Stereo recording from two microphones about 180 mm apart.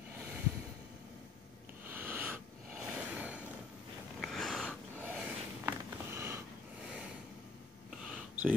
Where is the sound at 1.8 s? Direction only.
10° right (ahead or behind).